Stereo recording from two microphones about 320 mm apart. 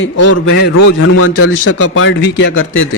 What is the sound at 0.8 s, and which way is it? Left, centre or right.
A man's voice, left.